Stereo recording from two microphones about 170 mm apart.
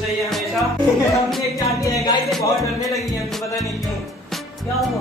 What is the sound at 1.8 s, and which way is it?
Music, 20° left (ahead or behind).